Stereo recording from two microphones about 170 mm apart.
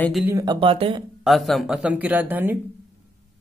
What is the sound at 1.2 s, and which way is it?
Speech, centre (ahead or behind).